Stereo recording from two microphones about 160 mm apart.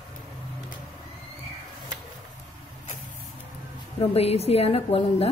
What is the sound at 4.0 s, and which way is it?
A woman's voice, 40° left (ahead or behind).